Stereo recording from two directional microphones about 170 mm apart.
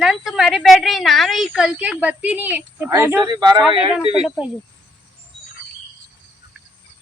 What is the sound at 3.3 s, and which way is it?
Speech, 25° right (ahead or behind).